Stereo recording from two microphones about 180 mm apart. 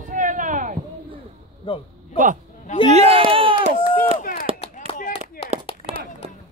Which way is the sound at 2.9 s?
35° right (ahead or behind).